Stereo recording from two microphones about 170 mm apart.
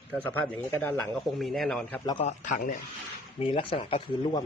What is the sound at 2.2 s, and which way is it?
Speech, 45° left (ahead or behind).